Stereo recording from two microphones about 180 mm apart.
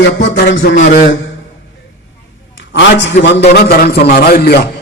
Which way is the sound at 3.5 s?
60° left (ahead or behind).